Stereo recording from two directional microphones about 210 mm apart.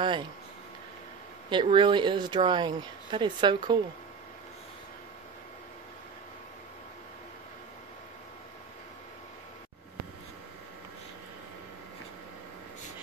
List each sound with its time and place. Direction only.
1.5 s speech: 20° right (ahead or behind)